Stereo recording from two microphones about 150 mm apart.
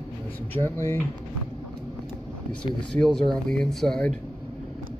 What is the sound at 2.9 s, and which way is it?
Speech, 5° left (ahead or behind).